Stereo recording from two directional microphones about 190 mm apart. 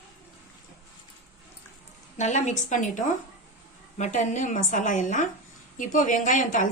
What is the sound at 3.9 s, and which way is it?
A woman's voice, 40° left (ahead or behind).